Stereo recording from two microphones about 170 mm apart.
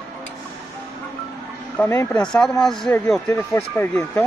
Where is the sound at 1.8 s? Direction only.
10° left (ahead or behind).